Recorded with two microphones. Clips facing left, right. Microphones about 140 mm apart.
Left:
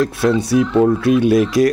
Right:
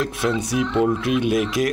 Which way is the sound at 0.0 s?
35° left (ahead or behind).